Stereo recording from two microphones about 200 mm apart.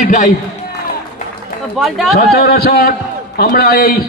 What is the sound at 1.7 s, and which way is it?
Speech, centre (ahead or behind).